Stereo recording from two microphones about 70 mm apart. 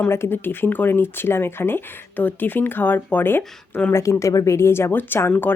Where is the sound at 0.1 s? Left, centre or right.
Left.